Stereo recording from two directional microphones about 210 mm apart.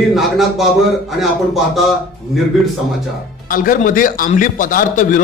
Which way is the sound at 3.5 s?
40° left (ahead or behind).